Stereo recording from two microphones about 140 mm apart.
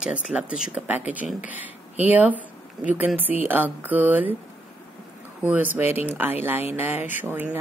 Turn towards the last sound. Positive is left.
turn(degrees=-15)  # may be behind; listen again after turning